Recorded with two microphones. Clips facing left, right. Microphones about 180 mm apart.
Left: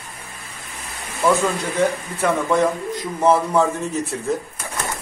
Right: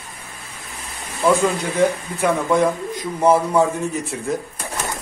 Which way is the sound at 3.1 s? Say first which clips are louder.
Right 1 dB; 10° right (ahead or behind).